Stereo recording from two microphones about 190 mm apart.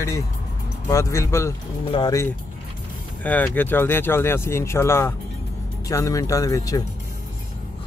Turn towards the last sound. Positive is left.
turn(degrees=20)  # may be behind; listen again after turning